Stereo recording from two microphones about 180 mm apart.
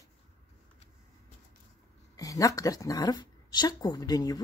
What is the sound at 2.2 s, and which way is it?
A woman's voice, 20° left (ahead or behind).